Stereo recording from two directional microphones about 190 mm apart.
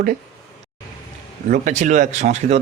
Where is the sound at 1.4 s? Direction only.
45° right (ahead or behind).